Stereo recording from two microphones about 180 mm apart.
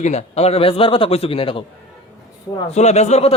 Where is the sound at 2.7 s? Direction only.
40° left (ahead or behind).